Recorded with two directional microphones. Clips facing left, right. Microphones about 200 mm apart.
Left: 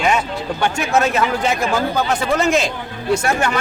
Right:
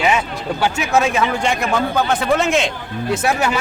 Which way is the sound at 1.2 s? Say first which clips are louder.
Even; 5° left (ahead or behind).